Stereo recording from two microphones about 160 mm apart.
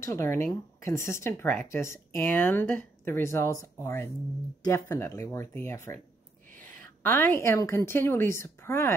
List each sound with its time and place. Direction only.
0.0 s speech: 15° left (ahead or behind)